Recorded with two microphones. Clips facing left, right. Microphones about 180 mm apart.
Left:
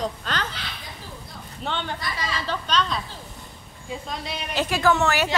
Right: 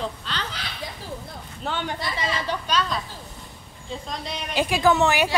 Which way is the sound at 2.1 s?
20° right (ahead or behind).